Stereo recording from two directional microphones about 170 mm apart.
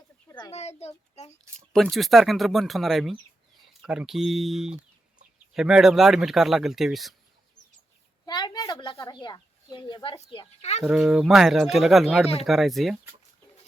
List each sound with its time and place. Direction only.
0.3 s a sound: 20° left (ahead or behind)
0.5 s a child's voice: 40° left (ahead or behind)
1.7 s speech: centre (ahead or behind)
8.3 s speech: 20° left (ahead or behind); by 10.8 s 40° left (ahead or behind)
10.8 s speech: centre (ahead or behind)